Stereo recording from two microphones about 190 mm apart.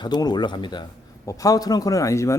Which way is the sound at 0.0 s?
20° left (ahead or behind).